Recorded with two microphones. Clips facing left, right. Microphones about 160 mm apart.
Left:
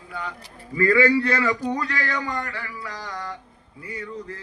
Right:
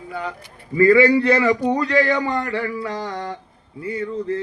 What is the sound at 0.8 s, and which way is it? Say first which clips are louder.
A man's voice: right 5 dB; 25° right (ahead or behind).